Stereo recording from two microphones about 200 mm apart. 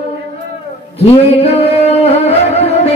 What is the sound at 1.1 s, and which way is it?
Music, 30° left (ahead or behind).